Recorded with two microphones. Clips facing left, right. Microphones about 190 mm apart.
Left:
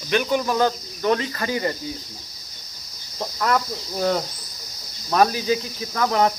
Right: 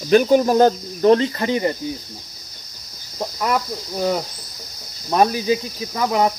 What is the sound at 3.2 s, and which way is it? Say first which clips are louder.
Cricket: right 1 dB; 15° right (ahead or behind).